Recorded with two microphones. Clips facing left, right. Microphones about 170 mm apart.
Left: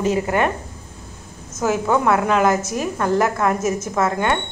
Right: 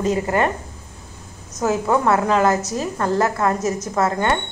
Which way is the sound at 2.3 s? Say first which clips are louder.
Even; 15° left (ahead or behind).